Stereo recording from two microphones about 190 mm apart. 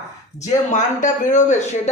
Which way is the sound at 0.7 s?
40° left (ahead or behind).